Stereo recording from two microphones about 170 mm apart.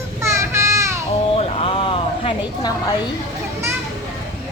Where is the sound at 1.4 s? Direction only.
35° left (ahead or behind).